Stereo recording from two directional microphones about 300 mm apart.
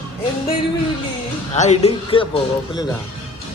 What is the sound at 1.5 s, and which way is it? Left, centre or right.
Speech, left.